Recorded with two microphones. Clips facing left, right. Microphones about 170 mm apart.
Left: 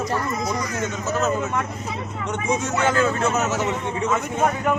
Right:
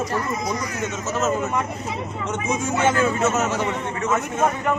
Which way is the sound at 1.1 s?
Centre (ahead or behind).